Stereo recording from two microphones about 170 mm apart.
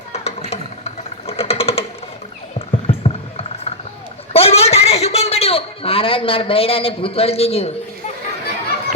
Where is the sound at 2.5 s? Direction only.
35° left (ahead or behind).